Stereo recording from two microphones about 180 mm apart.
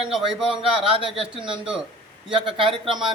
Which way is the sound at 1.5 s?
5° right (ahead or behind).